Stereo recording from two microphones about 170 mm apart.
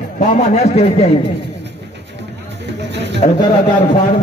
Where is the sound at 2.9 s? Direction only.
90° right.